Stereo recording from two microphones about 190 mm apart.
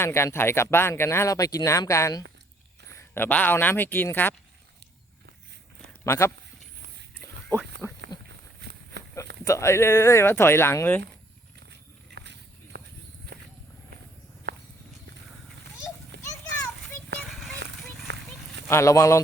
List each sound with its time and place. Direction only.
0.0 s speech: 15° left (ahead or behind)
6.1 s speech: 15° left (ahead or behind)
7.8 s speech: 10° right (ahead or behind)
9.4 s speech: 15° left (ahead or behind)
12.1 s biting: 65° right (ahead or behind)
13.3 s walk: 55° right (ahead or behind)
16.1 s children playing: 65° right (ahead or behind)
17.2 s a sound: centre (ahead or behind)
17.7 s clip-clop: centre (ahead or behind)
18.7 s speech: 15° left (ahead or behind)